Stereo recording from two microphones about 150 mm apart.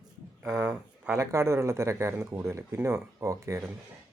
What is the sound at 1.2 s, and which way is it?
Speech, 20° right (ahead or behind).